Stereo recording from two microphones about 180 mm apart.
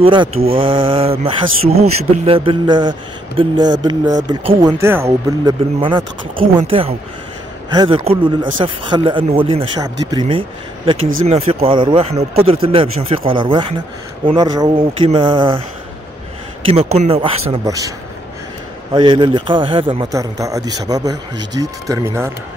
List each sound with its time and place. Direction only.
0.0 s speech: 30° right (ahead or behind)
4.8 s speech: 15° right (ahead or behind)
16.6 s speech: 35° right (ahead or behind)
17.6 s speech: 20° right (ahead or behind)
18.9 s speech: 25° right (ahead or behind)
20.1 s speech: 20° right (ahead or behind)